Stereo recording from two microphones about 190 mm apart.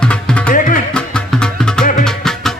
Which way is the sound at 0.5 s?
45° left (ahead or behind).